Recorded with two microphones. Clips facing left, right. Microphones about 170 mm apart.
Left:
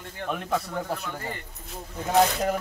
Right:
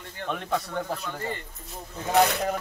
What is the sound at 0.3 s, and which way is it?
Speech, 5° left (ahead or behind).